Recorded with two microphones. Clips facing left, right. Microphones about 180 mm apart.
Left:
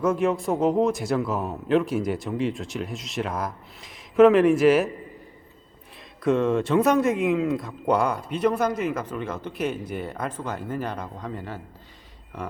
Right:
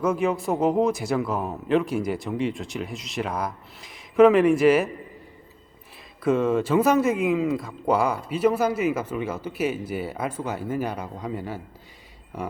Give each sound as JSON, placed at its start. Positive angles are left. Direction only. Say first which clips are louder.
{"t": 0.0, "sound": "speech", "louder": "left 1 dB", "side_deg": 0}
{"t": 6.2, "sound": "speech", "louder": "even", "side_deg": 0}